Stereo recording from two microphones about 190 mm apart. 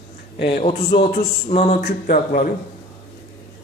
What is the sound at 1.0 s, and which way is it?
Speech, 45° left (ahead or behind).